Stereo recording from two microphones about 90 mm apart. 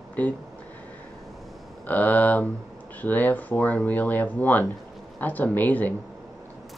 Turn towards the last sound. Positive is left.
turn(degrees=20)  # may be behind; listen again after turning